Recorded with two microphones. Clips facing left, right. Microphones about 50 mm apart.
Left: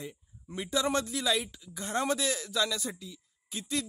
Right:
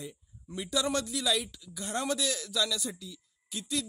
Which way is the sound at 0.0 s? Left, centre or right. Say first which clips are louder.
Left 1 dB; left.